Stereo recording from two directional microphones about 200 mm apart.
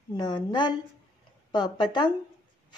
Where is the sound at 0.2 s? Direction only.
20° left (ahead or behind).